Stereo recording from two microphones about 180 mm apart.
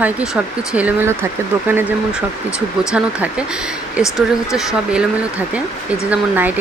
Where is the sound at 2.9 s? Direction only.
5° right (ahead or behind).